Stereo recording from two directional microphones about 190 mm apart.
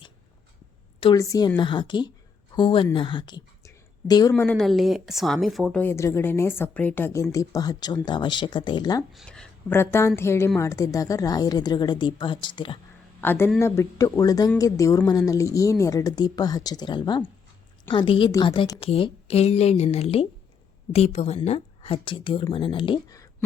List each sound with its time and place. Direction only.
1.1 s speech: 15° left (ahead or behind)
4.4 s a woman's voice: centre (ahead or behind)
5.8 s speech: 15° left (ahead or behind)
9.1 s speech: 5° left (ahead or behind); by 12.8 s 25° left (ahead or behind)
13.2 s a woman's voice: 10° left (ahead or behind)